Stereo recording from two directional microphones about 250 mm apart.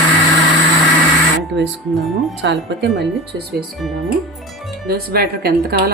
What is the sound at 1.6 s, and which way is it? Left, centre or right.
Speech, right.